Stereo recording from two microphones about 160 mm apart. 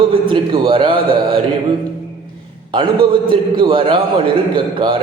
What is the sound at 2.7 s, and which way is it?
A man's voice, 30° right (ahead or behind).